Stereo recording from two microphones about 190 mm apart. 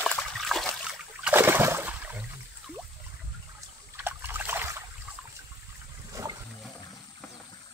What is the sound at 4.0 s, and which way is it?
Trickle, 10° right (ahead or behind).